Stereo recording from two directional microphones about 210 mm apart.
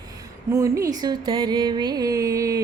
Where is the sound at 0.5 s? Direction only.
15° right (ahead or behind).